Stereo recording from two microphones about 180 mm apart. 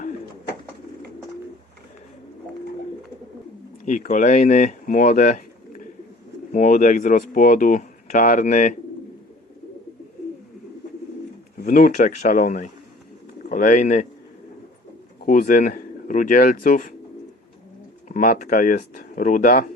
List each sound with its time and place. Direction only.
3.8 s speech: 40° left (ahead or behind)
11.6 s speech: 50° left (ahead or behind)
15.2 s speech: 50° left (ahead or behind)
18.1 s speech: 45° left (ahead or behind)